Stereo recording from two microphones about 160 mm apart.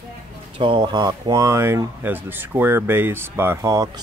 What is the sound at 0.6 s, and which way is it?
Speech, 30° right (ahead or behind).